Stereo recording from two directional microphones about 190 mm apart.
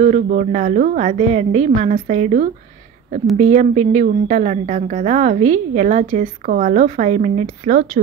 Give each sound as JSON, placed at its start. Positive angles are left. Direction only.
{"t": 0.0, "sound": "a woman's voice", "side_deg": -45}